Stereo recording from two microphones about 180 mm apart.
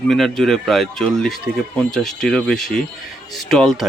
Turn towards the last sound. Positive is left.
turn(degrees=0)  # may be behind; listen again after turning